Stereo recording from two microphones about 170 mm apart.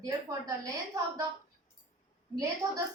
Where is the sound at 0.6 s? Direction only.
20° right (ahead or behind).